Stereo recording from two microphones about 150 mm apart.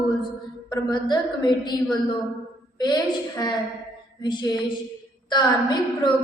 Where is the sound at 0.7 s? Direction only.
30° left (ahead or behind).